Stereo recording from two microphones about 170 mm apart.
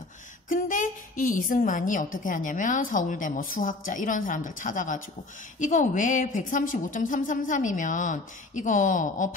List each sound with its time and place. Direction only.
0.5 s a woman's voice: 50° left (ahead or behind)